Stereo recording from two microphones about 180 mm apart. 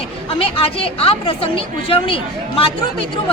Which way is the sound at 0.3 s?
30° left (ahead or behind).